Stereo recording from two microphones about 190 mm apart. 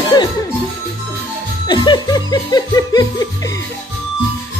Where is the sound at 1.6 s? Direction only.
25° left (ahead or behind).